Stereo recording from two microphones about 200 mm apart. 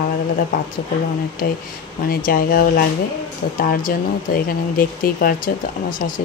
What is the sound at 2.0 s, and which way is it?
Speech, 45° left (ahead or behind).